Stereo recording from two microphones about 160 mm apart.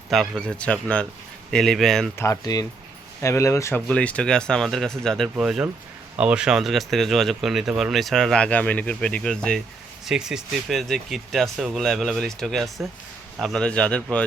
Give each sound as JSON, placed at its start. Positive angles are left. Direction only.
{"t": 0.1, "sound": "speech", "side_deg": 5}
{"t": 2.1, "sound": "speech", "side_deg": 20}